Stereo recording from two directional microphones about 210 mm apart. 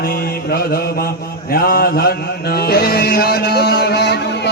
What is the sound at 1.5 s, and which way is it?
Mantra, 45° left (ahead or behind).